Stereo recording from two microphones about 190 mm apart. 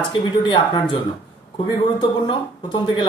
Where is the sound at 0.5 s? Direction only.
25° left (ahead or behind).